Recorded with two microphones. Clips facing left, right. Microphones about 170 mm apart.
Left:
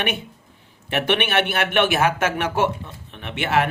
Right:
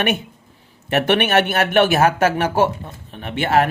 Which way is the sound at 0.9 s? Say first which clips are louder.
Right 4 dB; 45° right (ahead or behind).